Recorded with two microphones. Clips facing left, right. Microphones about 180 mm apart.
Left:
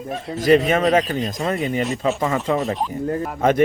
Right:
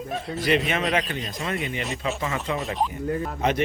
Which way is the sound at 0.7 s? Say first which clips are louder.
Left 8 dB; 45° left (ahead or behind).